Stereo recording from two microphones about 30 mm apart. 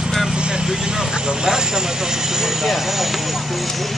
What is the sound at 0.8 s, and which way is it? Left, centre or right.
Speech, right.